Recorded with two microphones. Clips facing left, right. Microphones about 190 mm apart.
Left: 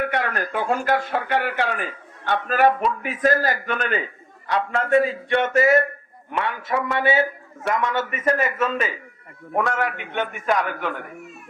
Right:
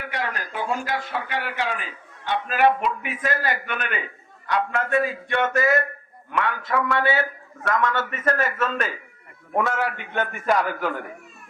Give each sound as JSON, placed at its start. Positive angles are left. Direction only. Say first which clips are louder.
{"t": 0.0, "sound": "a man's voice", "louder": "left 6 dB", "side_deg": 55}
{"t": 9.6, "sound": "a man's voice", "louder": "left 1 dB", "side_deg": 0}